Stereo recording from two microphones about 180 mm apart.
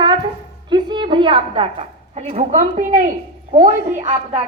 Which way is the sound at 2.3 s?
45° right (ahead or behind).